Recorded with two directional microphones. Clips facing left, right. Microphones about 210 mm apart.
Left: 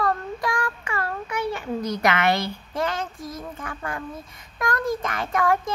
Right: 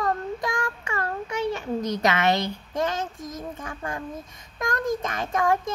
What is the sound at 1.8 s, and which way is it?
A woman's voice, 20° right (ahead or behind).